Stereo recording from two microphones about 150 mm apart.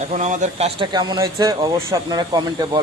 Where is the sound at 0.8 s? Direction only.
30° right (ahead or behind).